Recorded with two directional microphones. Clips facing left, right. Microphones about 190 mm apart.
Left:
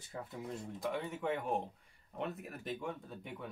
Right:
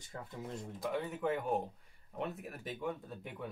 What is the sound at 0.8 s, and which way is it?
Speech, centre (ahead or behind).